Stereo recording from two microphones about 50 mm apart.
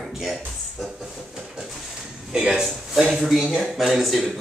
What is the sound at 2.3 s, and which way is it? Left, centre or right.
Speech, centre.